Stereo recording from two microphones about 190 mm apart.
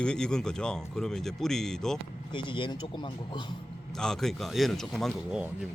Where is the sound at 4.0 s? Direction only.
5° left (ahead or behind).